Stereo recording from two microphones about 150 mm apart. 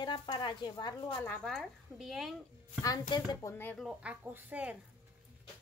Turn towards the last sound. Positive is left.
turn(degrees=-10)  # may be behind; listen again after turning